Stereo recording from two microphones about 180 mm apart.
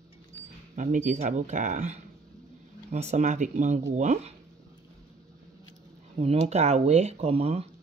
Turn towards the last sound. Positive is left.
turn(degrees=-35)  # may be behind; listen again after turning